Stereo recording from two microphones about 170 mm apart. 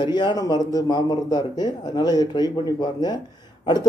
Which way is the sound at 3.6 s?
25° left (ahead or behind).